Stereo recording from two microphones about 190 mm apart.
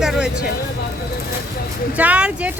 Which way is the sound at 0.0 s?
5° right (ahead or behind).